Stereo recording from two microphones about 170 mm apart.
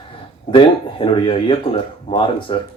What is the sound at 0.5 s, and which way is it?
Speech, 30° left (ahead or behind).